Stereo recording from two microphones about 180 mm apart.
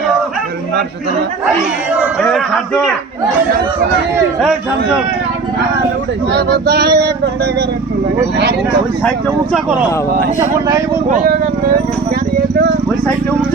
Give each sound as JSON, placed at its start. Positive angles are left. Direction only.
{"t": 6.3, "sound": "male singing", "side_deg": -65}
{"t": 11.1, "sound": "speech", "side_deg": -50}